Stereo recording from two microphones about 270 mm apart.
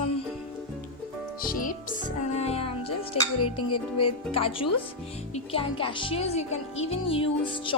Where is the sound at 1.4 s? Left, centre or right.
Left.